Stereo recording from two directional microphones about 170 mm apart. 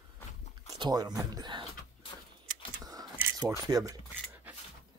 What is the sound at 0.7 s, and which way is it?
Speech, 25° right (ahead or behind).